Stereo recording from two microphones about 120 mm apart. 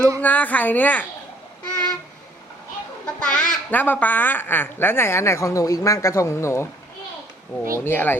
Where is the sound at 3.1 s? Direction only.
10° left (ahead or behind).